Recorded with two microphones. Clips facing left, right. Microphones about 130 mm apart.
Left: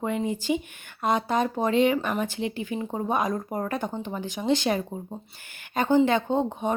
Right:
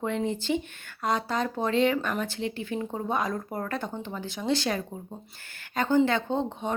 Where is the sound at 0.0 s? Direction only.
10° left (ahead or behind).